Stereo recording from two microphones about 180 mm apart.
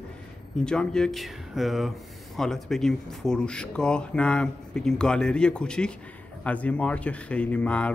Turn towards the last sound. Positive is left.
turn(degrees=5)  # may be behind; listen again after turning